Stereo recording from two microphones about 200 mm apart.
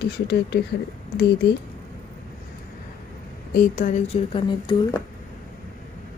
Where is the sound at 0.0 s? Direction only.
55° left (ahead or behind).